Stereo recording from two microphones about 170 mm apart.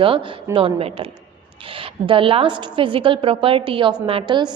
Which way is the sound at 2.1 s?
30° right (ahead or behind).